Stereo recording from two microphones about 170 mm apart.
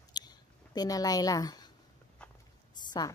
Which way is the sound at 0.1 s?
25° left (ahead or behind).